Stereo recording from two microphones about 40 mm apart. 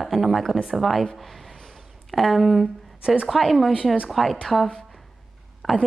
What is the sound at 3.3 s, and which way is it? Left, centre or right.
A woman's voice, centre.